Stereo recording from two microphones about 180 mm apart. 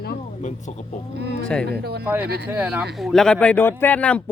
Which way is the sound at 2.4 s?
10° right (ahead or behind).